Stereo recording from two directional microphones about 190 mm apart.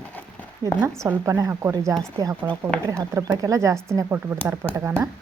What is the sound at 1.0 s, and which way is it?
A woman's voice, 15° right (ahead or behind).